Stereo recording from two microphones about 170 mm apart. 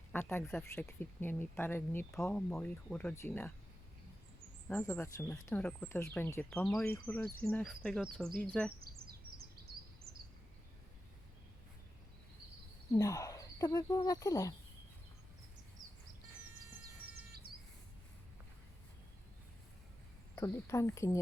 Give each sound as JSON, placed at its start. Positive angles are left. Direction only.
{"t": 0.1, "sound": "speech", "side_deg": 10}
{"t": 4.7, "sound": "speech", "side_deg": 15}
{"t": 12.9, "sound": "speech", "side_deg": 20}
{"t": 15.8, "sound": "a sound", "side_deg": 0}
{"t": 20.3, "sound": "speech", "side_deg": 15}